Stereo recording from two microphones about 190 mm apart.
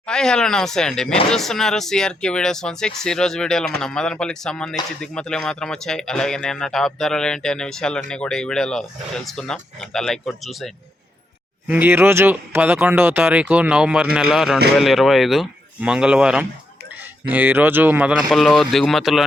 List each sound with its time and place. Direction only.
0.0 s speech: 5° left (ahead or behind)
11.7 s speech: 10° right (ahead or behind)